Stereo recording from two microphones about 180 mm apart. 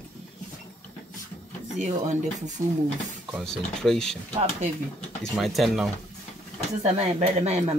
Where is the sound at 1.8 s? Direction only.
40° right (ahead or behind).